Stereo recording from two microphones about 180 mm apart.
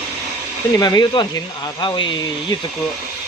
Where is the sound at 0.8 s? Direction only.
20° left (ahead or behind).